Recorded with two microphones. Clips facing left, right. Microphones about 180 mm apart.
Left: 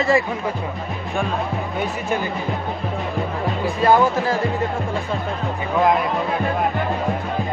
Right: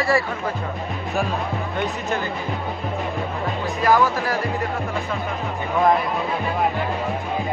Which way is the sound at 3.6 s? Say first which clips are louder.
Left 2 dB; 25° left (ahead or behind).